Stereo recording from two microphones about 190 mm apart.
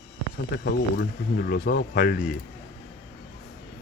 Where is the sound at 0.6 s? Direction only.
60° left (ahead or behind).